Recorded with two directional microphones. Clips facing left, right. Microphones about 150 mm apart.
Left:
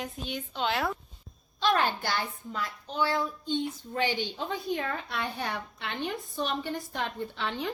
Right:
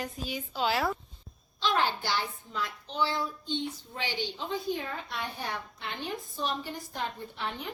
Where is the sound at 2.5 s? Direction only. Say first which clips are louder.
Left 1 dB; 50° left (ahead or behind).